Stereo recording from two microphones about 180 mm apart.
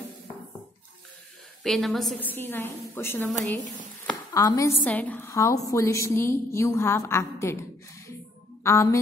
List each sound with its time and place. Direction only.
1.6 s a woman's voice: centre (ahead or behind)
2.2 s a woman's voice: 10° left (ahead or behind)
4.3 s a woman's voice: 20° left (ahead or behind)
8.6 s a woman's voice: 15° left (ahead or behind)